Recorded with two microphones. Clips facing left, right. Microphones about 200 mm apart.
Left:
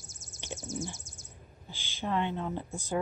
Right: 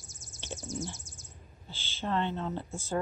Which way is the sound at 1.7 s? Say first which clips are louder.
Even; 15° left (ahead or behind).